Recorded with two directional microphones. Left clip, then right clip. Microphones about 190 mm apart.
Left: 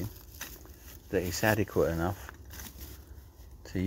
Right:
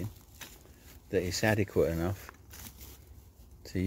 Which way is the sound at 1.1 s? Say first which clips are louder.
Left 1 dB; 20° right (ahead or behind).